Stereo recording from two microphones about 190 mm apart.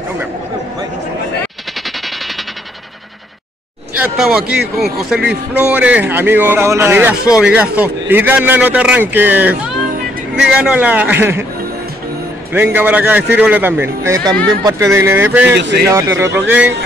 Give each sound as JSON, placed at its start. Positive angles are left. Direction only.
{"t": 4.0, "sound": "a man's voice", "side_deg": -5}
{"t": 12.5, "sound": "a man's voice", "side_deg": -10}
{"t": 15.5, "sound": "a man's voice", "side_deg": -65}
{"t": 15.9, "sound": "a man's voice", "side_deg": -15}